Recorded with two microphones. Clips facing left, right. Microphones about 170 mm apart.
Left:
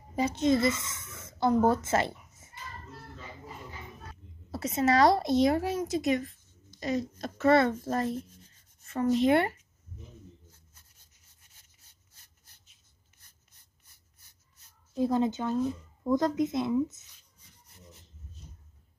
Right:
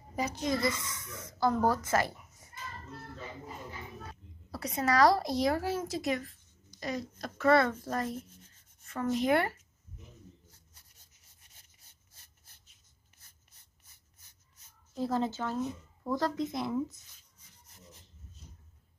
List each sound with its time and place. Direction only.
0.1 s speech: 25° left (ahead or behind)
4.5 s speech: 25° left (ahead or behind)
15.0 s speech: 20° left (ahead or behind)